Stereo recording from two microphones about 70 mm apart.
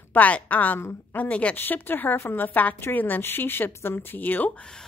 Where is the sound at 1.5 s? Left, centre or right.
Left.